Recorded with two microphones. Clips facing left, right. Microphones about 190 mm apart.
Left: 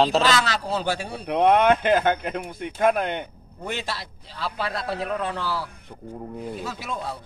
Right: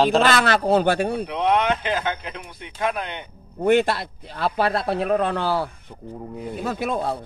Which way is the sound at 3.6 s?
55° right (ahead or behind).